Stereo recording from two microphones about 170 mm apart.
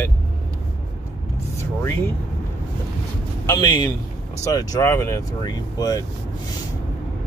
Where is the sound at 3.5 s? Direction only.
25° left (ahead or behind).